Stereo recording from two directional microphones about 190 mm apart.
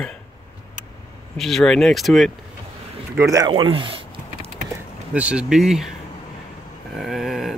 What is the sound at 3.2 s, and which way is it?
Typing, 15° right (ahead or behind).